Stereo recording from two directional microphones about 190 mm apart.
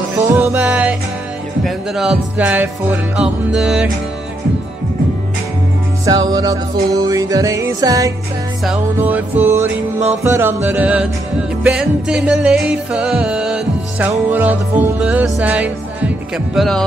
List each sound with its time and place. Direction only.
0.3 s music: 10° right (ahead or behind)
6.0 s music: 20° right (ahead or behind); by 16.8 s centre (ahead or behind)